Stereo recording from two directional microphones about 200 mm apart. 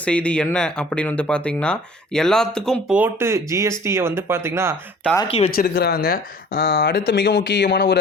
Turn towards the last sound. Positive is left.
turn(degrees=55)  # may be behind; listen again after turning